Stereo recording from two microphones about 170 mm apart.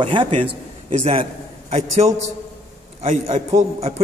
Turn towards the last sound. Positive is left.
turn(degrees=-40)  # may be behind; listen again after turning